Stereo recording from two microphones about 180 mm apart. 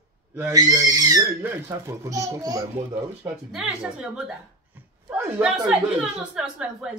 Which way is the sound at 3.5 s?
5° right (ahead or behind).